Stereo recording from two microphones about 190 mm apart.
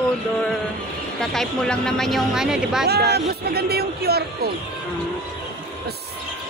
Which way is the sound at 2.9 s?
60° right (ahead or behind).